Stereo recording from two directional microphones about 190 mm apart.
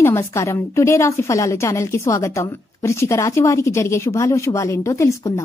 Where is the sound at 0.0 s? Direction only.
15° left (ahead or behind).